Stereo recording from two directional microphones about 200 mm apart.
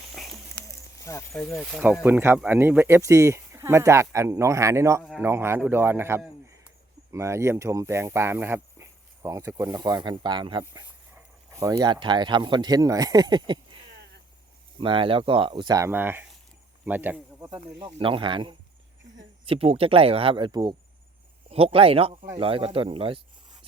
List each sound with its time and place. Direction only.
0.7 s snake: 15° left (ahead or behind)
1.3 s speech: 5° left (ahead or behind); by 13.6 s 20° right (ahead or behind)
13.9 s a sound: 55° right (ahead or behind)
14.8 s speech: 25° right (ahead or behind); by 17.5 s 10° right (ahead or behind)
17.9 s speech: 25° right (ahead or behind)